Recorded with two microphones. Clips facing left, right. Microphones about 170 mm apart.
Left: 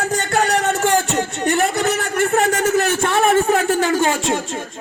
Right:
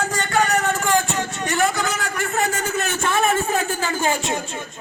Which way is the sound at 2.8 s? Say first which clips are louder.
Left 4 dB; 70° left (ahead or behind).